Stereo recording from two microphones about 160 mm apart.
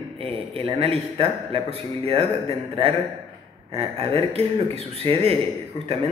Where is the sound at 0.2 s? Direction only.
40° right (ahead or behind).